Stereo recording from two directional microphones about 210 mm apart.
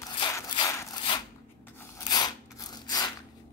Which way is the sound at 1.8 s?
20° left (ahead or behind).